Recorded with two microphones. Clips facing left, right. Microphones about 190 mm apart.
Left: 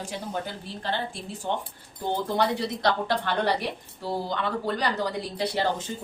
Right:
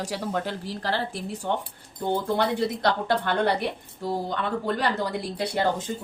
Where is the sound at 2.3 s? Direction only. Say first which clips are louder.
Right 1 dB; 55° right (ahead or behind).